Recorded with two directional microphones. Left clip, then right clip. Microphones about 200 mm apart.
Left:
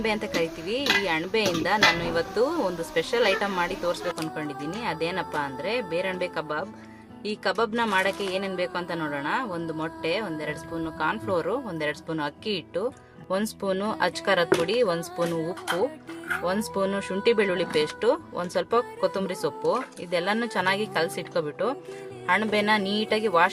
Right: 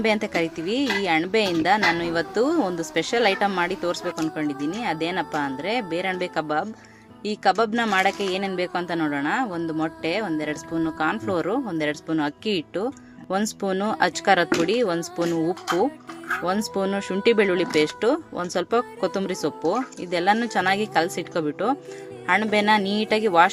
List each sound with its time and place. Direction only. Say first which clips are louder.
0.0 s speech: right 4 dB; 20° right (ahead or behind)
16.4 s speech: right 1 dB; 15° right (ahead or behind)